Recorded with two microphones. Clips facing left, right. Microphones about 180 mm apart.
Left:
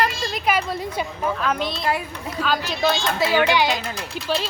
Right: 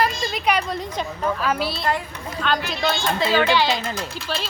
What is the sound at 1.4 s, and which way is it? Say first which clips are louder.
Speech: right 1 dB; 5° right (ahead or behind).